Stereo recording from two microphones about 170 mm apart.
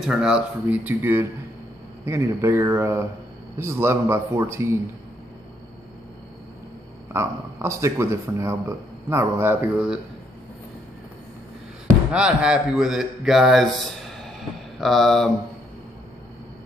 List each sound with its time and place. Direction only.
0.0 s speech: 5° right (ahead or behind)
7.1 s speech: 15° right (ahead or behind)
12.1 s a man's voice: 5° right (ahead or behind)